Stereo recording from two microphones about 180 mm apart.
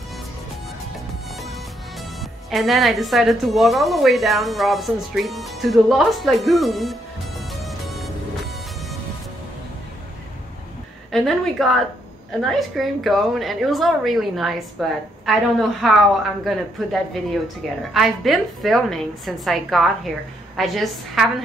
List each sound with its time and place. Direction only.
2.5 s a woman's voice: centre (ahead or behind)
7.6 s music: centre (ahead or behind)
11.1 s a woman's voice: centre (ahead or behind)